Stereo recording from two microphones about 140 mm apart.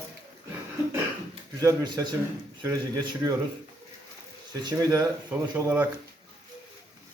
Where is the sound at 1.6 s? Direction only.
25° right (ahead or behind).